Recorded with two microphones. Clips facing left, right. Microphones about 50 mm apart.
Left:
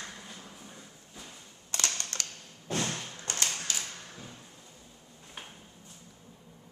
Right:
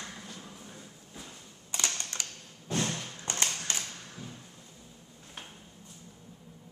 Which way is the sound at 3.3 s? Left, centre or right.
Right.